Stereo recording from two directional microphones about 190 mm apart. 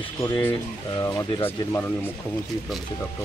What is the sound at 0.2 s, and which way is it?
Speech, 15° left (ahead or behind).